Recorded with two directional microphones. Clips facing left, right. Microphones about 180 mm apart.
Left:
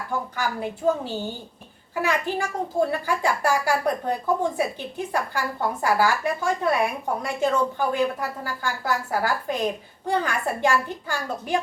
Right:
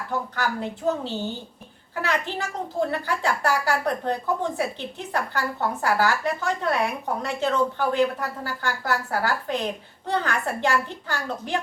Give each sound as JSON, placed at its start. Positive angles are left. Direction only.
{"t": 0.1, "sound": "speech", "side_deg": 10}